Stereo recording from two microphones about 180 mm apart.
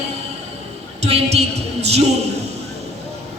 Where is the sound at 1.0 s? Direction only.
35° right (ahead or behind).